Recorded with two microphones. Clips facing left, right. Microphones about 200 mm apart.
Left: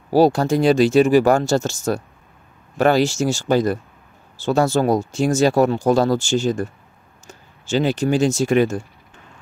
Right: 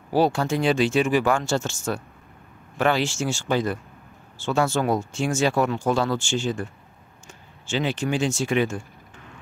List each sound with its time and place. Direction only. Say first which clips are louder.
0.1 s speech: left 6 dB; 40° left (ahead or behind)